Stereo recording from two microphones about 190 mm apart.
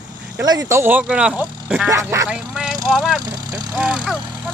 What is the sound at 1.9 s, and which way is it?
Speech, 15° right (ahead or behind).